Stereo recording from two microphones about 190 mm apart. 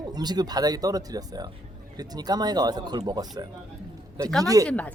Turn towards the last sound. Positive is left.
turn(degrees=5)  # may be behind; listen again after turning